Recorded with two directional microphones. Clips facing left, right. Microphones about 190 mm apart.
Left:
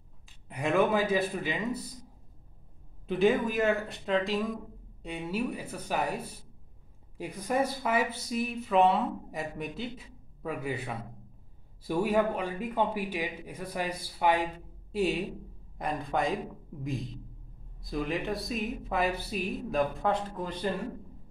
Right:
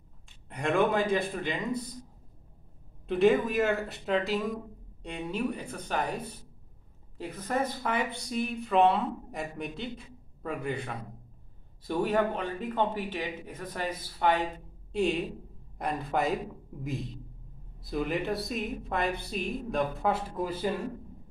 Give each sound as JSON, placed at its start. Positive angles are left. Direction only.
{"t": 0.5, "sound": "speech", "side_deg": 5}
{"t": 3.1, "sound": "a man's voice", "side_deg": 0}